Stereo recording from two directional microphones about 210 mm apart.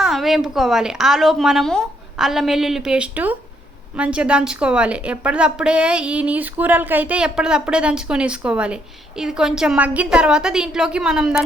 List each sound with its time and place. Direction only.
0.0 s a woman's voice: centre (ahead or behind)